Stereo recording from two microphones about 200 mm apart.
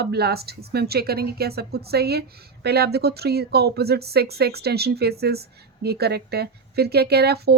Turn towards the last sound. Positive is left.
turn(degrees=-55)  # may be behind; listen again after turning